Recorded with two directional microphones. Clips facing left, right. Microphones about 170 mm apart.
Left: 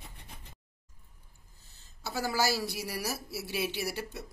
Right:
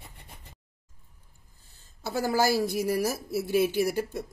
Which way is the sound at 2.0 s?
50° right (ahead or behind).